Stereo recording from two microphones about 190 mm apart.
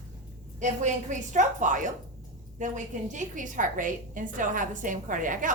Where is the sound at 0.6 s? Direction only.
40° right (ahead or behind).